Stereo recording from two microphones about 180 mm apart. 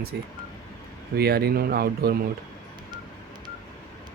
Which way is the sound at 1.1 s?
60° right (ahead or behind).